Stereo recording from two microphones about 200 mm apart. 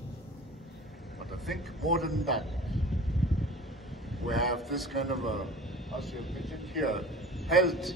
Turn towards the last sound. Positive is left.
turn(degrees=0)  # may be behind; listen again after turning